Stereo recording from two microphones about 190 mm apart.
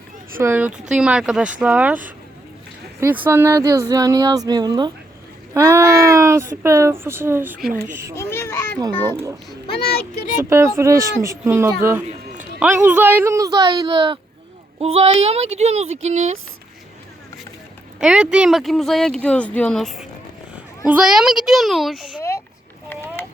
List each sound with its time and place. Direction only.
0.3 s speech: 10° right (ahead or behind)
3.2 s speech: 15° right (ahead or behind)
8.1 s a sound: 15° left (ahead or behind)
8.9 s a child's voice: 10° left (ahead or behind)
9.7 s a child's voice: 55° left (ahead or behind)
10.3 s speech: 15° right (ahead or behind); by 16.4 s 35° right (ahead or behind)
18.0 s speech: 5° right (ahead or behind)
22.9 s a sound: 10° left (ahead or behind)